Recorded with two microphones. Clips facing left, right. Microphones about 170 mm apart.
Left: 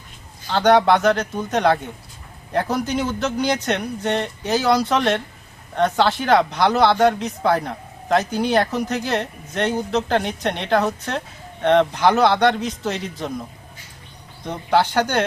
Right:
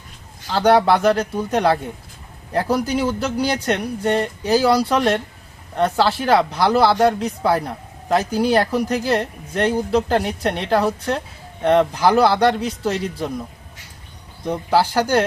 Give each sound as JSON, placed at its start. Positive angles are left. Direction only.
{"t": 0.4, "sound": "speech", "side_deg": -5}
{"t": 14.4, "sound": "speech", "side_deg": -5}